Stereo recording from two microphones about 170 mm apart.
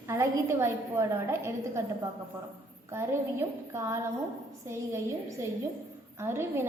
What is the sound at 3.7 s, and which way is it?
Speech, 15° right (ahead or behind).